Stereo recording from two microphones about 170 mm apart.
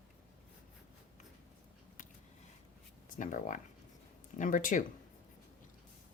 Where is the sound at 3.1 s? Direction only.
50° left (ahead or behind).